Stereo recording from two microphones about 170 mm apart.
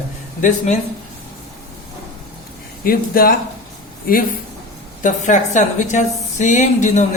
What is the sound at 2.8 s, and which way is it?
Speech, 60° left (ahead or behind).